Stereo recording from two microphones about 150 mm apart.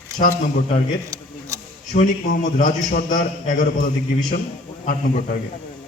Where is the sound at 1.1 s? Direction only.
20° right (ahead or behind).